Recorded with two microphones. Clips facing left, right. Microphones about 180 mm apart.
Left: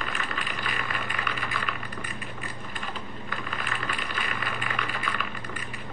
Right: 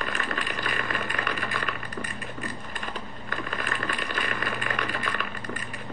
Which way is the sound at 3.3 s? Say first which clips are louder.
Right 3 dB; 45° right (ahead or behind).